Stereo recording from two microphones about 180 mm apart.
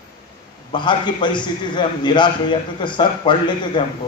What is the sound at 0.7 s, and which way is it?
A man's voice, 25° left (ahead or behind).